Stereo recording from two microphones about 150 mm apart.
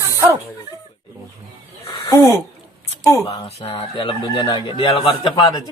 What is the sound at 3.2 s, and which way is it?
Fowl, 30° left (ahead or behind).